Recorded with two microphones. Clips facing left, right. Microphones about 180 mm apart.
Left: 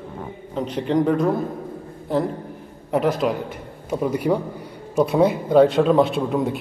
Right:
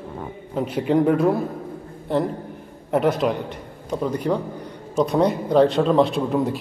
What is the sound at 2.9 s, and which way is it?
A man's voice, centre (ahead or behind).